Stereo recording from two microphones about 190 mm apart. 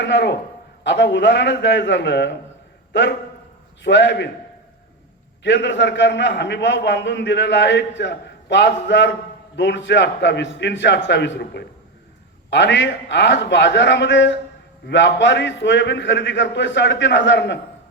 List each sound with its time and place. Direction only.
0.0 s a man's voice: 65° left (ahead or behind)
5.4 s a man's voice: 70° left (ahead or behind)